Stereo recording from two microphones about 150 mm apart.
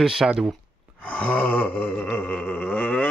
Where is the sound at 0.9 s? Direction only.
10° left (ahead or behind).